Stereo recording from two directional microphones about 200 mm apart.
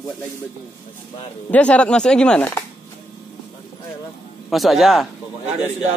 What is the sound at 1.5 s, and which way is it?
Speech, 5° left (ahead or behind).